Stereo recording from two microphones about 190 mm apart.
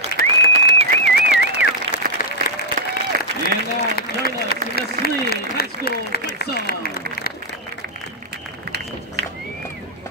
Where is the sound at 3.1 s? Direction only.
45° right (ahead or behind).